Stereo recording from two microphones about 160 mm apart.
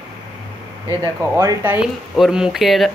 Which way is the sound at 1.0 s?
20° right (ahead or behind).